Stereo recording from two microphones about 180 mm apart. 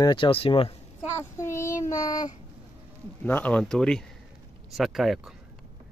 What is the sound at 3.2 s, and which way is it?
Speech, 10° left (ahead or behind).